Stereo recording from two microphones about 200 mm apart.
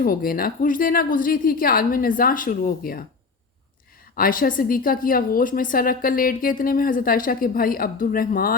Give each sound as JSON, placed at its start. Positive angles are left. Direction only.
{"t": 0.0, "sound": "a woman's voice", "side_deg": 45}
{"t": 4.1, "sound": "a woman's voice", "side_deg": 45}